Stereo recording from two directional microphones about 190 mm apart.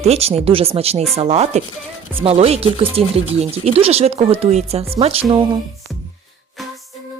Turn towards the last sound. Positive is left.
turn(degrees=-25)  # may be behind; listen again after turning